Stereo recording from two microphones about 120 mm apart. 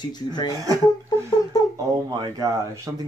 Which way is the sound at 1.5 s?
35° left (ahead or behind).